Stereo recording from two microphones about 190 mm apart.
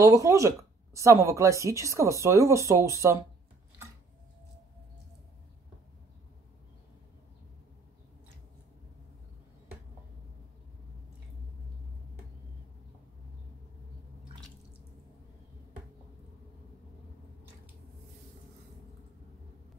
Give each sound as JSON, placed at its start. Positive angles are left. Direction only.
{"t": 0.0, "sound": "speech", "side_deg": -15}